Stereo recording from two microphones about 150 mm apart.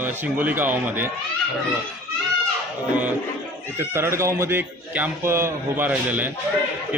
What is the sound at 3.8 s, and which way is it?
A man's voice, 15° right (ahead or behind).